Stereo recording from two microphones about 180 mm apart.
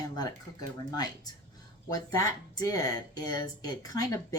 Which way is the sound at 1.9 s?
20° left (ahead or behind).